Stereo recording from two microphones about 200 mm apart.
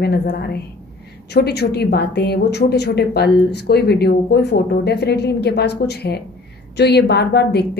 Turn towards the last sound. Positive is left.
turn(degrees=55)  # may be behind; listen again after turning